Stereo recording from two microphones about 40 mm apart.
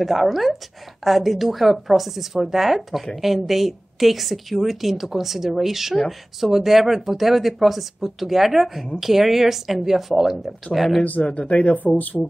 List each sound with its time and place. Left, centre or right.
0.0 s a woman's voice: centre
11.0 s speech: left
12.1 s speech: left